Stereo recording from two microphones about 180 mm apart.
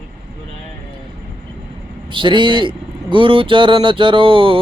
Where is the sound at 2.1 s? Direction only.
25° right (ahead or behind).